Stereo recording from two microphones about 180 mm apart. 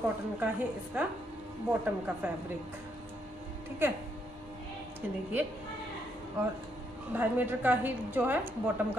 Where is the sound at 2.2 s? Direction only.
10° right (ahead or behind).